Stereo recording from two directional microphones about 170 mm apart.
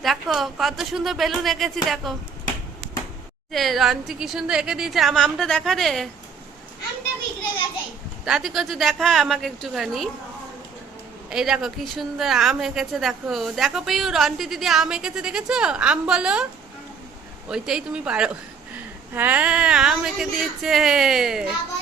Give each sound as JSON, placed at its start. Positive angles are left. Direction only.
{"t": 0.0, "sound": "a woman's voice", "side_deg": 0}
{"t": 3.5, "sound": "a woman's voice", "side_deg": 0}
{"t": 8.2, "sound": "a woman's voice", "side_deg": 0}
{"t": 11.3, "sound": "a woman's voice", "side_deg": -5}
{"t": 17.5, "sound": "a woman's voice", "side_deg": -5}